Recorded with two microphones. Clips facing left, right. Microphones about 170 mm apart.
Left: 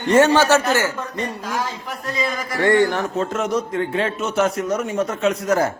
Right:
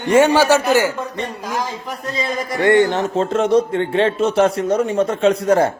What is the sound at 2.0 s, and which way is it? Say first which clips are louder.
A man's voice: right 2 dB; 25° right (ahead or behind).